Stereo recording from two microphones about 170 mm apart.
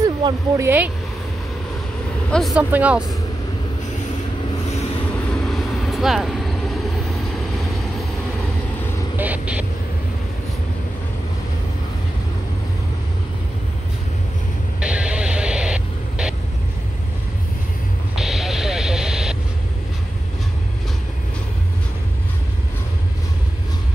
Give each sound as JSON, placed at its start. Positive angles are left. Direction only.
{"t": 0.0, "sound": "speech", "side_deg": -20}
{"t": 2.3, "sound": "speech", "side_deg": 0}
{"t": 5.4, "sound": "vehicle", "side_deg": 0}
{"t": 9.1, "sound": "vehicle", "side_deg": -10}
{"t": 14.8, "sound": "vehicle", "side_deg": -5}
{"t": 18.2, "sound": "vehicle", "side_deg": 0}